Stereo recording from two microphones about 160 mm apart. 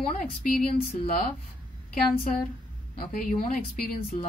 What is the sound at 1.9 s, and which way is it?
Speech, 65° left (ahead or behind).